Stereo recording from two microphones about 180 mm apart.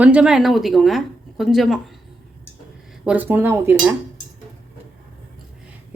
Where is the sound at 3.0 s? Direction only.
10° right (ahead or behind).